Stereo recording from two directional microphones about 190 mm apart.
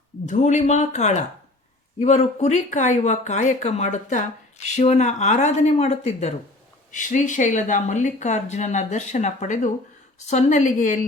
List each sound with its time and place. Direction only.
0.3 s speech: 40° left (ahead or behind)